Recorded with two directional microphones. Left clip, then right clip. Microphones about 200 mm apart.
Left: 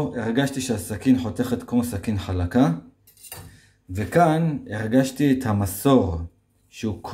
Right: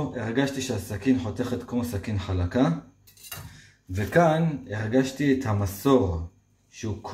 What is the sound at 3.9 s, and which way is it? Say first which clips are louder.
Speech: left 2 dB; 25° left (ahead or behind).